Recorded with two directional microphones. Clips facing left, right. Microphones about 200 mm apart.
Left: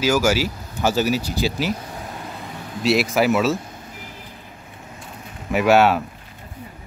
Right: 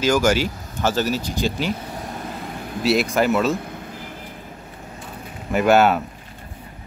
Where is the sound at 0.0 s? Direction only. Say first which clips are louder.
Right 1 dB; 5° left (ahead or behind).